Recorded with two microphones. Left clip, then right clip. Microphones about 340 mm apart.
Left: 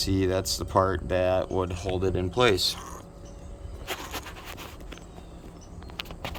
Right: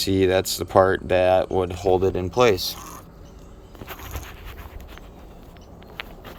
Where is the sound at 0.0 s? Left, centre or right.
Centre.